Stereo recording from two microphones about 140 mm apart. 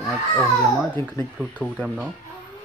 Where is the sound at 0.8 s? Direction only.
Centre (ahead or behind).